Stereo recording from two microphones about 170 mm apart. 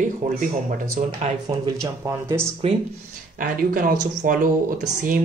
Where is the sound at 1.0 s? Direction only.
35° right (ahead or behind).